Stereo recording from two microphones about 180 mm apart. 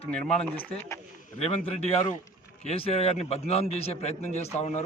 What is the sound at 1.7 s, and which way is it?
A man's voice, 35° left (ahead or behind).